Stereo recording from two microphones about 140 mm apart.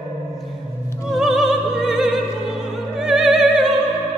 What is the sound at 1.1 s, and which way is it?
Opera, centre (ahead or behind).